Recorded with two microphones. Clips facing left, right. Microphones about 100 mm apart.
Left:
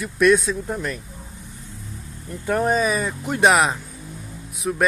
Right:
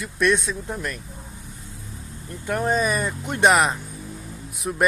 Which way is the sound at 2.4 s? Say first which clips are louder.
Left 2 dB; 5° left (ahead or behind).